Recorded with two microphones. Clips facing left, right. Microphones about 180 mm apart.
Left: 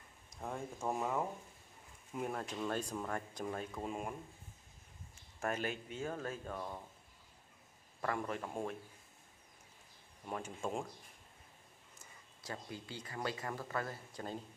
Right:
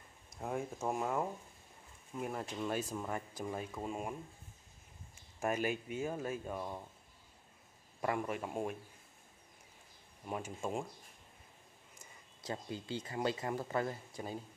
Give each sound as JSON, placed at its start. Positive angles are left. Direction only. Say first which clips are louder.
{"t": 0.4, "sound": "speech", "louder": "right 3 dB", "side_deg": -5}
{"t": 5.4, "sound": "speech", "louder": "right 3 dB", "side_deg": -10}
{"t": 8.0, "sound": "speech", "louder": "right 2 dB", "side_deg": -15}
{"t": 10.2, "sound": "speech", "louder": "right 1 dB", "side_deg": -10}
{"t": 12.4, "sound": "speech", "louder": "right 5 dB", "side_deg": -25}